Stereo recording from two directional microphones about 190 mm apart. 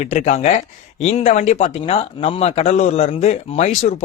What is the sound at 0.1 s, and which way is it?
Speech, 35° left (ahead or behind).